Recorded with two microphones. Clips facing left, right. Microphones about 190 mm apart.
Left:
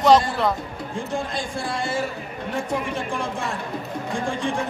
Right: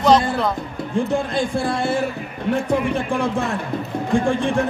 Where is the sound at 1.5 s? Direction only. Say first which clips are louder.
Right 6 dB; 60° right (ahead or behind).